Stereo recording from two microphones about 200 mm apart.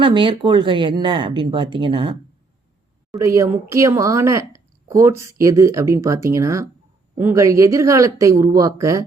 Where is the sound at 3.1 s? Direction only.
15° right (ahead or behind).